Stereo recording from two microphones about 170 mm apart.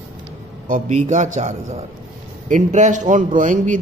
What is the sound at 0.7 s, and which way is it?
Speech, 45° right (ahead or behind).